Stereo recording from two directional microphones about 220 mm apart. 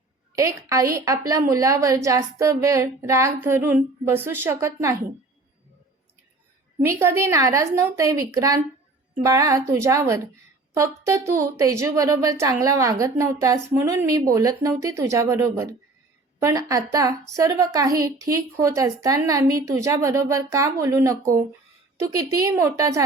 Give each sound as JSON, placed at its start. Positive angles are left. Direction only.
{"t": 0.3, "sound": "a woman's voice", "side_deg": -15}
{"t": 6.8, "sound": "a woman's voice", "side_deg": -10}